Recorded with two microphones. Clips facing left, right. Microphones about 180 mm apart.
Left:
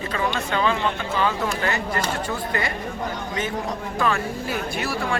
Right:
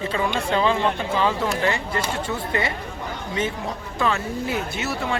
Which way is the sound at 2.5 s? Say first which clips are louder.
Right 3 dB; 25° right (ahead or behind).